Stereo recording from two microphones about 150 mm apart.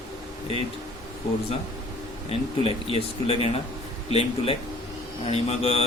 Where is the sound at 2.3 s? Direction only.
40° left (ahead or behind).